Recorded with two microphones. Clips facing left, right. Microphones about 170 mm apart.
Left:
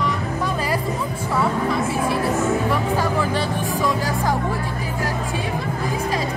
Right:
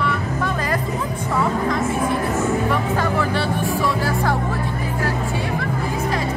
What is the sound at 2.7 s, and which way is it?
Music, 10° left (ahead or behind).